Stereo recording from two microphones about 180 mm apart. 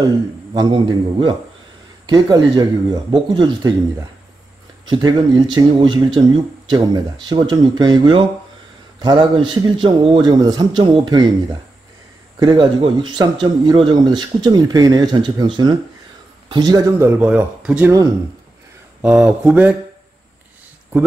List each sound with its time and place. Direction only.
0.6 s speech: 25° right (ahead or behind)
4.8 s speech: 25° right (ahead or behind)
12.4 s speech: 25° right (ahead or behind)
17.2 s speech: 5° right (ahead or behind)
18.9 s speech: 5° right (ahead or behind)